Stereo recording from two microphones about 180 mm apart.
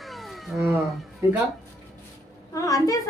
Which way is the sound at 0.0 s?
Centre (ahead or behind).